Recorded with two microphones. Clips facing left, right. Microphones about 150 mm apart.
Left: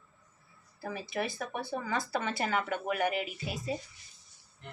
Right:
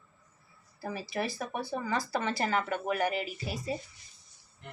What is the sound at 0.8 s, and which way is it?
Speech, 5° right (ahead or behind).